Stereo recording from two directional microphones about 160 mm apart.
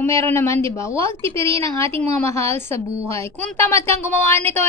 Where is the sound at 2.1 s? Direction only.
15° left (ahead or behind).